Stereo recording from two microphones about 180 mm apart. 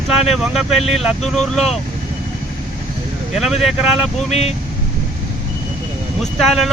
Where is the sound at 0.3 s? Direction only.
Centre (ahead or behind).